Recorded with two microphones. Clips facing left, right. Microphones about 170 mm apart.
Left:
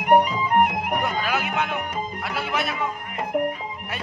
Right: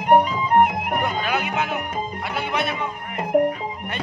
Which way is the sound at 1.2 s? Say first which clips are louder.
Right 1 dB; centre (ahead or behind).